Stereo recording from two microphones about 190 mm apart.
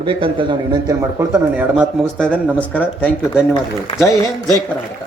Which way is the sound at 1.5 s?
5° right (ahead or behind).